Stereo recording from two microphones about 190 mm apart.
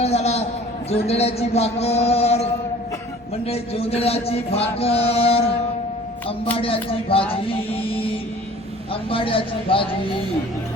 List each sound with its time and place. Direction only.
0.0 s a sound: 35° left (ahead or behind)
7.1 s a woman's voice: 30° left (ahead or behind)
7.5 s music: 30° left (ahead or behind)
8.9 s a woman's voice: 30° left (ahead or behind)